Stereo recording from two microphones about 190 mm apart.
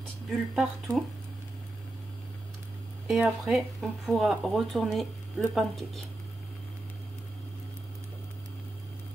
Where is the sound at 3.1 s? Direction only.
5° right (ahead or behind).